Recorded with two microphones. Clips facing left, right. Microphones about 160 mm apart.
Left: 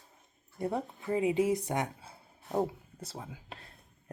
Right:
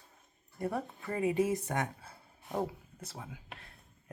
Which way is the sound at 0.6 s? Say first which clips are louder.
Left 2 dB; 20° left (ahead or behind).